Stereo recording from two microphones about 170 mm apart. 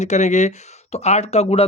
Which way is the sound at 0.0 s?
45° left (ahead or behind).